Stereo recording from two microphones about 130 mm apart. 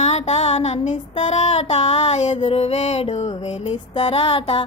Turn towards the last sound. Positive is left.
turn(degrees=45)  # may be behind; listen again after turning